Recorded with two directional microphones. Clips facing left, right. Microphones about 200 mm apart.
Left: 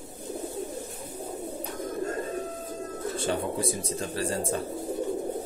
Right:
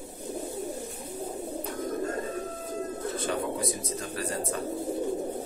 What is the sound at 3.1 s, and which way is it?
Speech, 30° left (ahead or behind).